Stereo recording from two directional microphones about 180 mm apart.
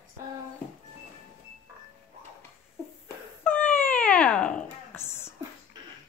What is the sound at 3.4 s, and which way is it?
Cat, 10° left (ahead or behind).